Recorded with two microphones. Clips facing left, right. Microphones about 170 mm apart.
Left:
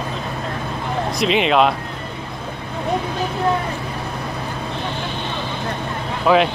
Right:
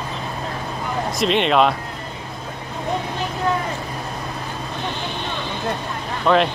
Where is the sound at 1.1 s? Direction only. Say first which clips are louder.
Left 1 dB; centre (ahead or behind).